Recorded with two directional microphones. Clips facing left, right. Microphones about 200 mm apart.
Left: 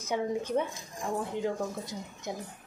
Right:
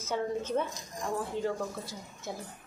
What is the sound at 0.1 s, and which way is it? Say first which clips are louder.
A woman's voice: left 1 dB; 15° left (ahead or behind).